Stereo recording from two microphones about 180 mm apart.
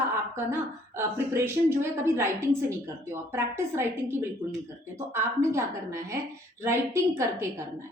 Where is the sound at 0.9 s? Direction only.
15° right (ahead or behind).